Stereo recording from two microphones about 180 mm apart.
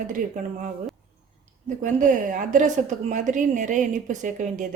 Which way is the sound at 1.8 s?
45° right (ahead or behind).